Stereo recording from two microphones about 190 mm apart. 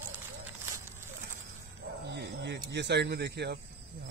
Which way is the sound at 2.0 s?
60° right (ahead or behind).